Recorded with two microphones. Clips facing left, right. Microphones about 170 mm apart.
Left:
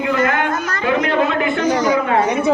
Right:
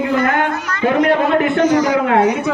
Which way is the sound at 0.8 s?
50° right (ahead or behind).